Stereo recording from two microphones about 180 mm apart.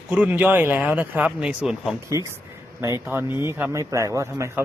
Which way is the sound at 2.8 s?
15° right (ahead or behind).